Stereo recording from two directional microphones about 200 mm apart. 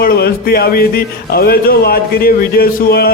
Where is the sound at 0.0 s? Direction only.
50° left (ahead or behind).